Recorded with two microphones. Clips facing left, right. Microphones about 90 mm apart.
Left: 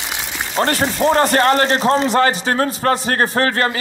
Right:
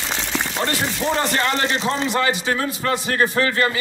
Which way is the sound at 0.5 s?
45° left (ahead or behind).